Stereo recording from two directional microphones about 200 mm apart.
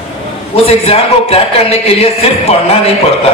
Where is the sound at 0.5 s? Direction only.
30° left (ahead or behind).